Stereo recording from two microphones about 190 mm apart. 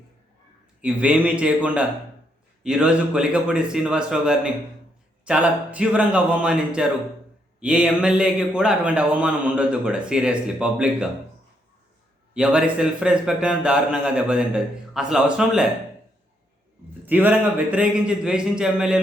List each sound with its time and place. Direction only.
0.8 s a man's voice: 5° right (ahead or behind)
12.3 s a man's voice: 5° right (ahead or behind)
17.1 s a man's voice: 10° right (ahead or behind)